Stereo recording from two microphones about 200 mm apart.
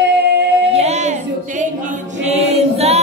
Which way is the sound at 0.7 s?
35° right (ahead or behind).